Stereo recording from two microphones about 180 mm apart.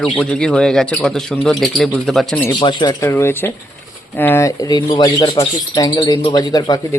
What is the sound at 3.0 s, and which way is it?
Speech, 15° left (ahead or behind).